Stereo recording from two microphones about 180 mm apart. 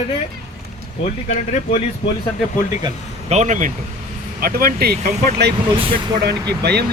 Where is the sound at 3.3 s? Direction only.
40° right (ahead or behind).